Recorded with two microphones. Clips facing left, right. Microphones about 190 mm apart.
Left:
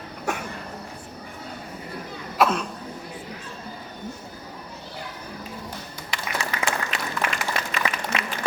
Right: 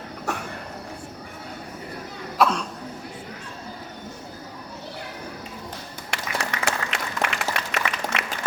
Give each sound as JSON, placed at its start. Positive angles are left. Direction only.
{"t": 2.4, "sound": "cough", "side_deg": 5}
{"t": 6.1, "sound": "applause", "side_deg": -70}